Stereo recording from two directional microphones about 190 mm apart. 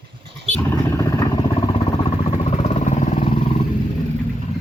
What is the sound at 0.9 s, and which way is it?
Vehicle, 15° left (ahead or behind).